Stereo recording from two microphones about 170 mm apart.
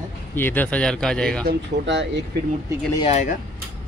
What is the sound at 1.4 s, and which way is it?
Speech, 90° right.